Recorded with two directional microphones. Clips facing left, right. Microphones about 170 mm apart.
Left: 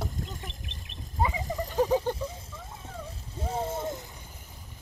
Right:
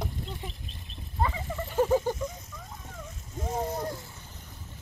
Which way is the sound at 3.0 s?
30° left (ahead or behind).